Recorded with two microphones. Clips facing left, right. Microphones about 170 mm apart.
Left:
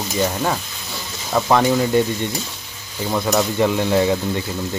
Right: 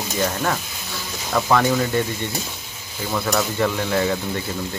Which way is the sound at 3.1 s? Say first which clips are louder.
Left 3 dB; 20° left (ahead or behind).